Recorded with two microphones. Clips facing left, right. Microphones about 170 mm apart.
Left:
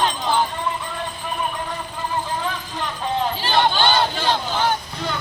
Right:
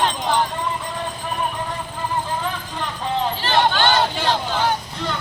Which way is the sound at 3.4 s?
10° left (ahead or behind).